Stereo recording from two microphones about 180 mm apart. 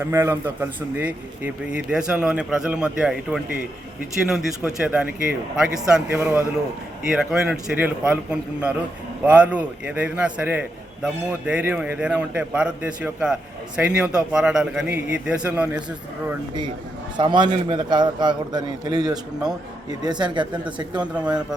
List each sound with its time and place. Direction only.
0.0 s a man's voice: 10° right (ahead or behind)
17.2 s a man's voice: 25° right (ahead or behind)